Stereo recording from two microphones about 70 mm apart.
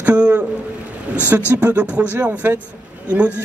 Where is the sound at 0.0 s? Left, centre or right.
Right.